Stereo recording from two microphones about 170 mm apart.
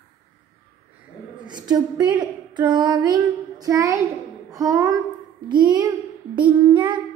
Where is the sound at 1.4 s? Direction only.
25° right (ahead or behind).